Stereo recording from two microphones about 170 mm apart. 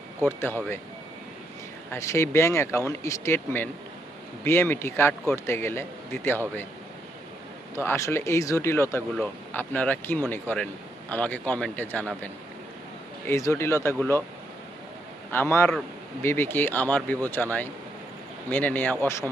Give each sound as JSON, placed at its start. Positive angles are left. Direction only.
{"t": 0.2, "sound": "speech", "side_deg": 15}
{"t": 1.9, "sound": "speech", "side_deg": 15}
{"t": 7.8, "sound": "speech", "side_deg": 15}
{"t": 15.3, "sound": "speech", "side_deg": 15}